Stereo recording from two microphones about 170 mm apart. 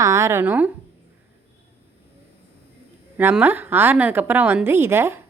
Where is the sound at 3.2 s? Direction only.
10° right (ahead or behind).